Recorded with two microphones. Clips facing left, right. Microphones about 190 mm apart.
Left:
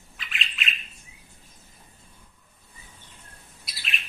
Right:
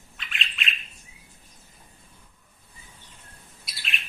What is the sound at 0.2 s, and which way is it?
Bird, centre (ahead or behind).